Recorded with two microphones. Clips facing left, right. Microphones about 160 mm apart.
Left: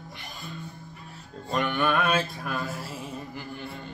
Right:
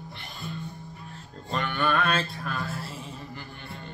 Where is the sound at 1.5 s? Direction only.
15° left (ahead or behind).